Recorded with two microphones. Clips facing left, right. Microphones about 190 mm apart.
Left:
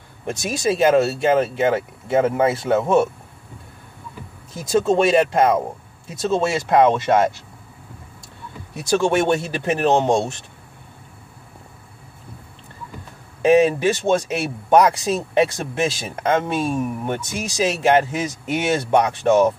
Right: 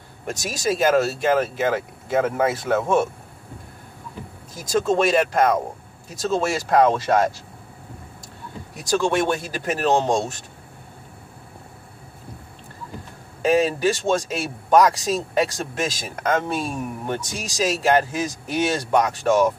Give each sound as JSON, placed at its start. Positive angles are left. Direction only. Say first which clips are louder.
{"t": 0.4, "sound": "speech", "louder": "left 3 dB", "side_deg": 25}
{"t": 4.6, "sound": "speech", "louder": "left 3 dB", "side_deg": 25}
{"t": 8.7, "sound": "speech", "louder": "left 3 dB", "side_deg": 25}
{"t": 13.4, "sound": "speech", "louder": "left 4 dB", "side_deg": 20}